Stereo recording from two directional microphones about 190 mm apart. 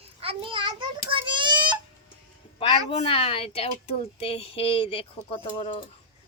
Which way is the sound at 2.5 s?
30° left (ahead or behind).